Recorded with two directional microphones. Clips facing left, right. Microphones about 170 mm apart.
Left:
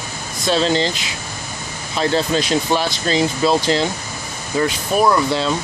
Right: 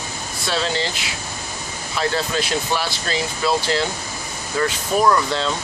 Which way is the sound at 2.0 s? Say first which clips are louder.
Left 4 dB; 25° left (ahead or behind).